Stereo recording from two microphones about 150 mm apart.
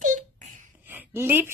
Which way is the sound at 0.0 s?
55° right (ahead or behind).